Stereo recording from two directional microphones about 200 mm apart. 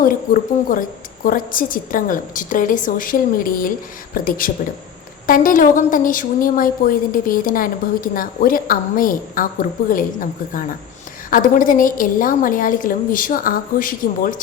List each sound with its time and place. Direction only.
0.0 s a woman's voice: 45° left (ahead or behind)